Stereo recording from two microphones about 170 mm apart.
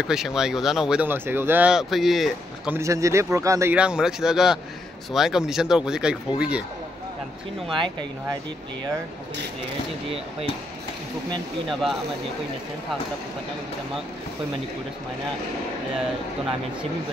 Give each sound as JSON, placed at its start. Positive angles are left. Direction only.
{"t": 0.0, "sound": "speech", "side_deg": -5}
{"t": 2.7, "sound": "speech", "side_deg": -15}
{"t": 3.7, "sound": "speech", "side_deg": -5}